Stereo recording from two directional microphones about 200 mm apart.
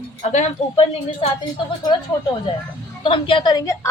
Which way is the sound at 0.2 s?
35° left (ahead or behind).